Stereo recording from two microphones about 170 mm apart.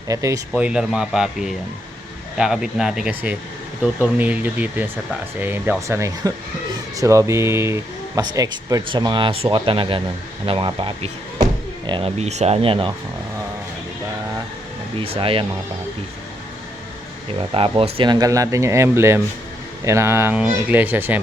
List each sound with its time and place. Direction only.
0.1 s speech: 20° right (ahead or behind)
0.5 s speech: 5° right (ahead or behind); by 12.9 s 35° right (ahead or behind)
14.9 s speech: 35° right (ahead or behind)
17.3 s speech: 35° right (ahead or behind); by 21.2 s 10° right (ahead or behind)